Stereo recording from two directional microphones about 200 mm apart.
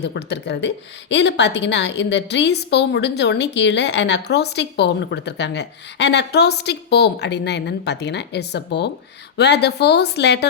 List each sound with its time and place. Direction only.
0.0 s a woman's voice: 55° left (ahead or behind)